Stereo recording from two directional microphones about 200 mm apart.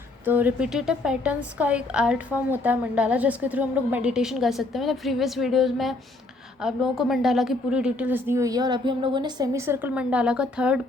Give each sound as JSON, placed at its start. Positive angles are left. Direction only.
{"t": 0.3, "sound": "a woman's voice", "side_deg": -10}